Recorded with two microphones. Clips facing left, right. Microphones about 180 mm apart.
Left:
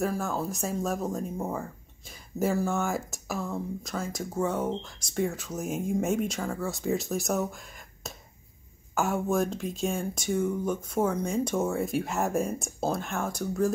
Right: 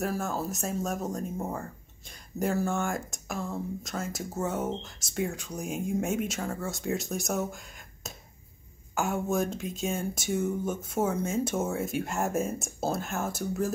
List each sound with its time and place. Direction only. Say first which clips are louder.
0.0 s speech: left 2 dB; centre (ahead or behind)